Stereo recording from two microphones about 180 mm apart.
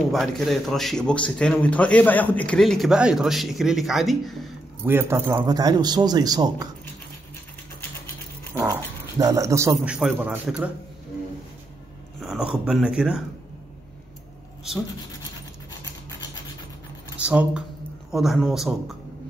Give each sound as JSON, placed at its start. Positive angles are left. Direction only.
{"t": 0.1, "sound": "speech", "side_deg": 0}
{"t": 4.8, "sound": "a man's voice", "side_deg": -15}
{"t": 9.2, "sound": "a man's voice", "side_deg": -20}
{"t": 9.8, "sound": "a man's voice", "side_deg": -5}
{"t": 12.2, "sound": "speech", "side_deg": -5}
{"t": 17.2, "sound": "speech", "side_deg": -5}